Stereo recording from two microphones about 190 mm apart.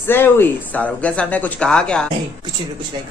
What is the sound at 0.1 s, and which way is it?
Speech, 10° left (ahead or behind).